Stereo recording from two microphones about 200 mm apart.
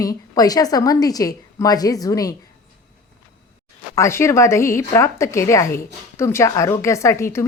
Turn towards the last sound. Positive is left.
turn(degrees=15)  # may be behind; listen again after turning